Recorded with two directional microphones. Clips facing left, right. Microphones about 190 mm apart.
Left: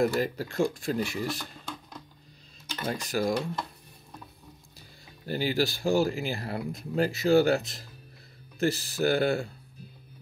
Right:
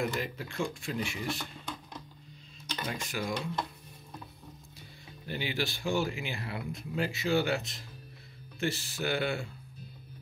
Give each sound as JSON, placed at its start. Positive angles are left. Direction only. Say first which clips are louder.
{"t": 0.0, "sound": "speech", "louder": "left 7 dB", "side_deg": 40}
{"t": 2.9, "sound": "speech", "louder": "left 8 dB", "side_deg": 40}
{"t": 5.2, "sound": "speech", "louder": "left 7 dB", "side_deg": 40}